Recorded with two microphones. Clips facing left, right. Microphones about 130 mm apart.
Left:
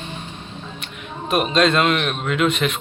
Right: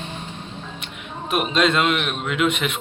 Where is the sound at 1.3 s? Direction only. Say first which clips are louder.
Left 2 dB; 15° right (ahead or behind).